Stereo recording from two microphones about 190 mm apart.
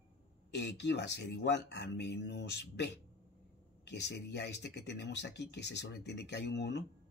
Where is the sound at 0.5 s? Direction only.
65° left (ahead or behind).